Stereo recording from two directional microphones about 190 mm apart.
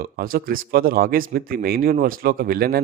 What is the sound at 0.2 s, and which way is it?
A man's voice, 50° right (ahead or behind).